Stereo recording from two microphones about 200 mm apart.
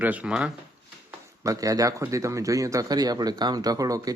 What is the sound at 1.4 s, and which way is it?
Speech, 15° right (ahead or behind).